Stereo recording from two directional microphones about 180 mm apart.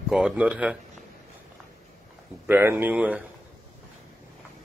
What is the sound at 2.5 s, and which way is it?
Speech, 10° right (ahead or behind).